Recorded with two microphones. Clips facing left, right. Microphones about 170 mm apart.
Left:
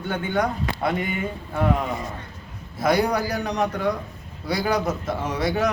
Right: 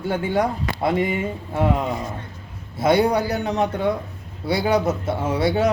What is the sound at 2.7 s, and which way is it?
A man's voice, 25° right (ahead or behind).